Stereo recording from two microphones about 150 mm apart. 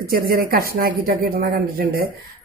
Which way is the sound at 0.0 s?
85° right.